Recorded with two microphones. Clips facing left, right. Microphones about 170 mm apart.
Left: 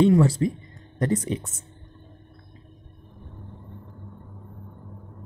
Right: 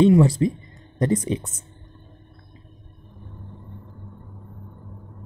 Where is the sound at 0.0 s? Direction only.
15° right (ahead or behind).